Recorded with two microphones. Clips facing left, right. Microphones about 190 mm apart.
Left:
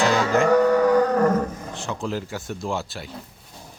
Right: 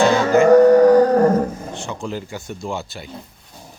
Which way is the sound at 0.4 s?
40° right (ahead or behind).